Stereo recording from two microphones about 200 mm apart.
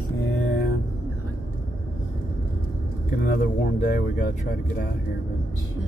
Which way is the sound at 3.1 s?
45° left (ahead or behind).